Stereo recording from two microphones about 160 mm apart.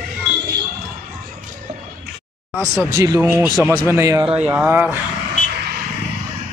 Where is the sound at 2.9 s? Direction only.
20° right (ahead or behind).